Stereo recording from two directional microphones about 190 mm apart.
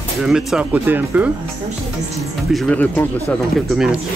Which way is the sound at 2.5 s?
5° left (ahead or behind).